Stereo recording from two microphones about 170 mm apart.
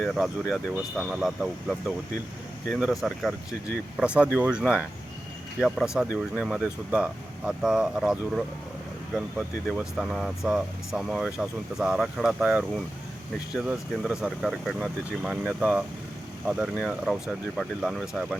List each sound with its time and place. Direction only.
0.0 s speech: centre (ahead or behind)
2.7 s speech: centre (ahead or behind)
9.6 s speech: 5° right (ahead or behind)
16.8 s speech: centre (ahead or behind)